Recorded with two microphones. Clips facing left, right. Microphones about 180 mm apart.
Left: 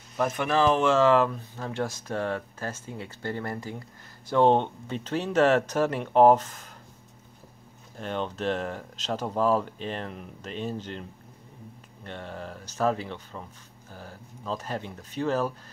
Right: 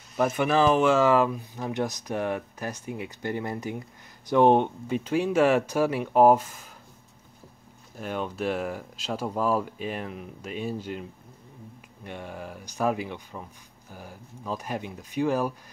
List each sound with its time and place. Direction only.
0.2 s speech: 5° right (ahead or behind)
8.0 s speech: 10° right (ahead or behind)